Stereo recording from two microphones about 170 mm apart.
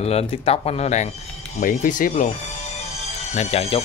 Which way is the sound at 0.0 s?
35° left (ahead or behind).